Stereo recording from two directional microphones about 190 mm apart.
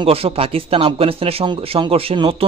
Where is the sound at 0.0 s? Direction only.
30° right (ahead or behind).